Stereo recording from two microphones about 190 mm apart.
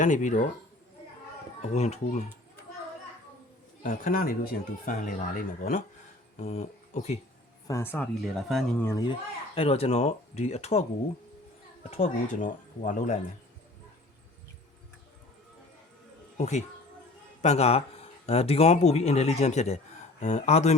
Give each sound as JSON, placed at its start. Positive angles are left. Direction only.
{"t": 0.0, "sound": "speech", "side_deg": 40}
{"t": 1.6, "sound": "speech", "side_deg": 35}
{"t": 3.8, "sound": "speech", "side_deg": 45}
{"t": 7.7, "sound": "speech", "side_deg": 10}
{"t": 8.2, "sound": "speech", "side_deg": 0}
{"t": 8.8, "sound": "speech", "side_deg": 15}
{"t": 9.6, "sound": "speech", "side_deg": 30}
{"t": 16.4, "sound": "speech", "side_deg": 40}